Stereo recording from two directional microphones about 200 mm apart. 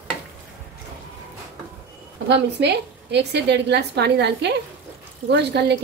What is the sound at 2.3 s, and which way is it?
A woman's voice, 60° right (ahead or behind).